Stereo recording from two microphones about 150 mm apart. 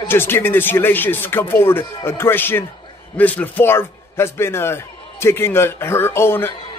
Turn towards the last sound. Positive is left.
turn(degrees=15)  # may be behind; listen again after turning